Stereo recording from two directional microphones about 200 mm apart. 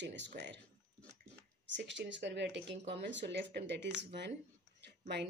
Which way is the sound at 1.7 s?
60° right (ahead or behind).